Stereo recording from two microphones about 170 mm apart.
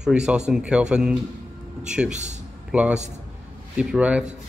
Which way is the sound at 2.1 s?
45° right (ahead or behind).